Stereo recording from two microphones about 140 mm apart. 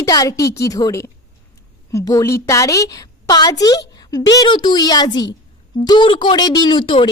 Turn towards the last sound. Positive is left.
turn(degrees=35)  # may be behind; listen again after turning